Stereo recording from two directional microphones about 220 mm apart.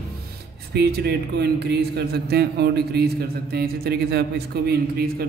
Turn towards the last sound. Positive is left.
turn(degrees=-45)  # may be behind; listen again after turning